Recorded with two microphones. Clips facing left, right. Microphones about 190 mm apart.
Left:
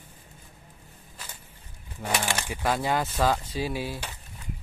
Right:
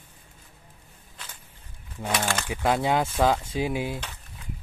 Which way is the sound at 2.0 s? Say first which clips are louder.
Right 2 dB; 10° left (ahead or behind).